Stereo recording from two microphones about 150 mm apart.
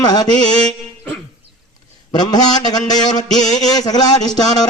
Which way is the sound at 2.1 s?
25° left (ahead or behind).